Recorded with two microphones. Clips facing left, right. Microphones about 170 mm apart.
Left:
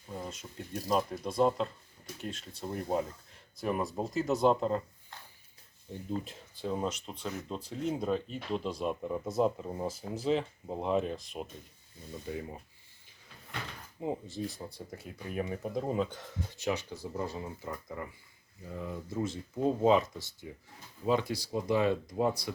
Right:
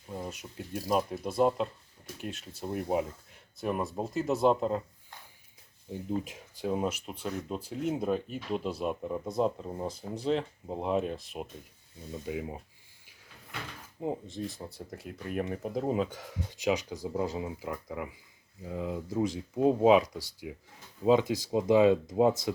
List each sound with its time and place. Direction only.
0.1 s speech: 10° right (ahead or behind)
5.9 s speech: 15° right (ahead or behind)
14.0 s speech: centre (ahead or behind); by 22.5 s 20° right (ahead or behind)